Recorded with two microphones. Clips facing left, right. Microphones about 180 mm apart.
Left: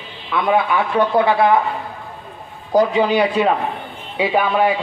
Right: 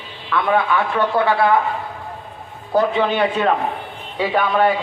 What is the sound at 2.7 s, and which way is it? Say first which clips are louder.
Speech: left 2 dB; 40° left (ahead or behind).